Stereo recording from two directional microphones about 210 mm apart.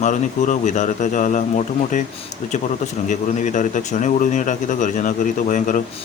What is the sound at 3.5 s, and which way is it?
A man's voice, 35° left (ahead or behind).